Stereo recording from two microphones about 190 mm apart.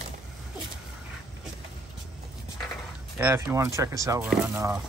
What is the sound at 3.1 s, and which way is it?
Speech, 15° right (ahead or behind).